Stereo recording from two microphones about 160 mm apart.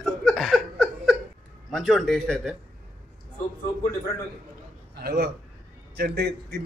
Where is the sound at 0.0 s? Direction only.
Centre (ahead or behind).